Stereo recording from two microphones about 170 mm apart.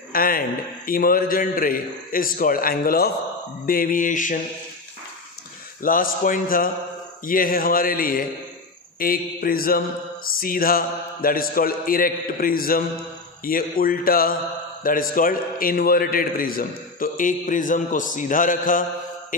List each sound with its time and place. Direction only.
0.1 s a man's voice: 60° left (ahead or behind)
3.6 s mantra: 55° left (ahead or behind)
5.8 s a man's voice: 55° left (ahead or behind)